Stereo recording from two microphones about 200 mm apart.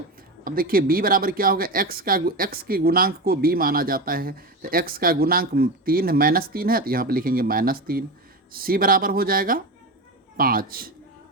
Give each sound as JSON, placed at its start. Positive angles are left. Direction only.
{"t": 0.4, "sound": "speech", "side_deg": -45}